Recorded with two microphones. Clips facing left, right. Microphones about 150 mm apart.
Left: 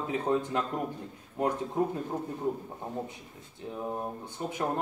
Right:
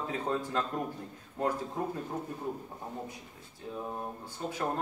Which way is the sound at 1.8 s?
20° left (ahead or behind).